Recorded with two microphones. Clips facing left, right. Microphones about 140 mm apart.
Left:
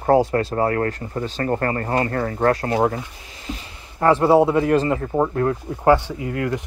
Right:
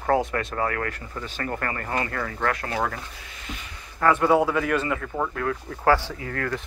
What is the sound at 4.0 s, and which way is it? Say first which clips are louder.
Speech: left 5 dB; 30° left (ahead or behind).